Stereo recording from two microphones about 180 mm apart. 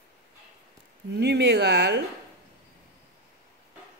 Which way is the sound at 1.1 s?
65° right (ahead or behind).